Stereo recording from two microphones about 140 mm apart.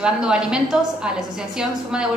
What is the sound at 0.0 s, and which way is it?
A woman's voice, 5° right (ahead or behind).